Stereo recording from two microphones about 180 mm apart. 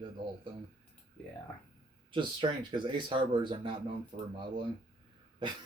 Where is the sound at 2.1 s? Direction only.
25° right (ahead or behind).